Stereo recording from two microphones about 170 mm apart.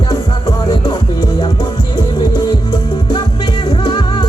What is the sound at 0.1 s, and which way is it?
Music, 20° left (ahead or behind).